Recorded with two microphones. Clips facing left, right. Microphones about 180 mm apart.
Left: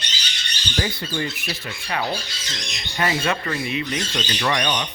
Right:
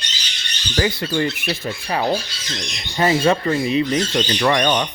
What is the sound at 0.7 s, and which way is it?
Speech, 70° right (ahead or behind).